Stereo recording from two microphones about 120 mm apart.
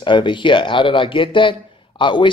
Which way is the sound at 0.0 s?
40° left (ahead or behind).